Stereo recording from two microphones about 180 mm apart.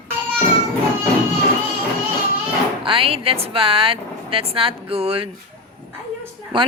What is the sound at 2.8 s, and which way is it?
Speech, 30° right (ahead or behind).